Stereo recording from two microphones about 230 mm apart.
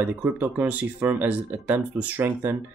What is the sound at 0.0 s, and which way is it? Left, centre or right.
Speech, centre.